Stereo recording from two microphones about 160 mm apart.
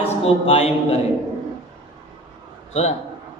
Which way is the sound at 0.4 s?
40° left (ahead or behind).